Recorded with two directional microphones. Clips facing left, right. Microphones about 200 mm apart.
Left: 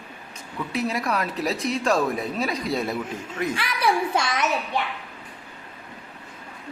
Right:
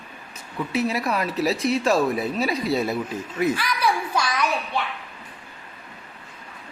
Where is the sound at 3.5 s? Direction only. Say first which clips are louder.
Left 1 dB; 25° left (ahead or behind).